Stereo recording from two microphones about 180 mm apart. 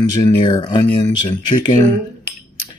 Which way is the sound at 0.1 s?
25° left (ahead or behind).